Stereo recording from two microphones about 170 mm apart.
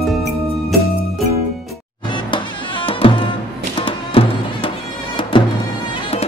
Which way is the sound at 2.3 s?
30° left (ahead or behind).